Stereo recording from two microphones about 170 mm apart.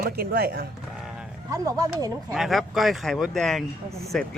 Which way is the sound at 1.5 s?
20° right (ahead or behind).